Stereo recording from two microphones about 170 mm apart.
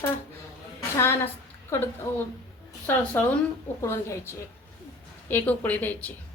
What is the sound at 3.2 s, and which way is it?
A woman's voice, 10° left (ahead or behind).